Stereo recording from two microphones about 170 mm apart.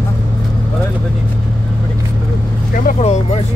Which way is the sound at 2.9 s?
40° left (ahead or behind).